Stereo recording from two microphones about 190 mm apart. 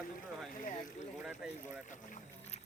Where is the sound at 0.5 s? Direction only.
40° left (ahead or behind).